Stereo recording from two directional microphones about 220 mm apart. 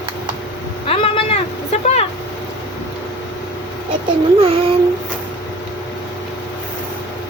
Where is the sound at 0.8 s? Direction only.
25° left (ahead or behind).